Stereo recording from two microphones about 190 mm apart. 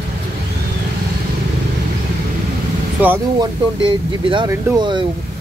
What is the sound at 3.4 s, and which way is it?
Speech, 25° right (ahead or behind).